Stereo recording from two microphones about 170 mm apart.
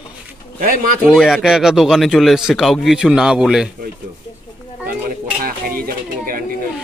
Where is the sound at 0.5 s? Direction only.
50° right (ahead or behind).